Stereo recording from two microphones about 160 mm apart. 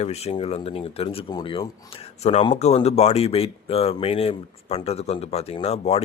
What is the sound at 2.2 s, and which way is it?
Speech, 45° left (ahead or behind).